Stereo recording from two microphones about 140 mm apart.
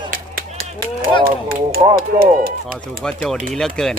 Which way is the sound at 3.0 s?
5° left (ahead or behind).